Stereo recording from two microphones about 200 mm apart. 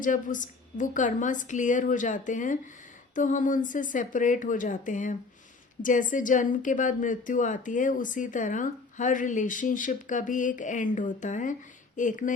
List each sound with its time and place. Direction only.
0.0 s a woman's voice: 40° left (ahead or behind)